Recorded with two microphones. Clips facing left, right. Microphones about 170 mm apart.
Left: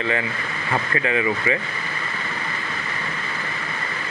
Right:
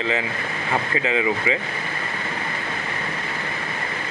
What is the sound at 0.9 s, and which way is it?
Speech, 20° right (ahead or behind).